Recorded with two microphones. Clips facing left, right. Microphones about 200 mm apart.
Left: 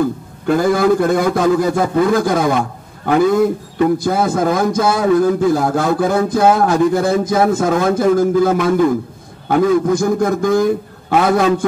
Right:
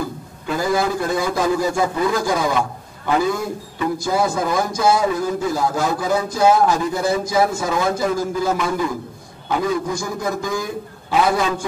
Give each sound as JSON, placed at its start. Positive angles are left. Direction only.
{"t": 0.5, "sound": "a man's voice", "side_deg": 55}
{"t": 3.7, "sound": "a man's voice", "side_deg": 55}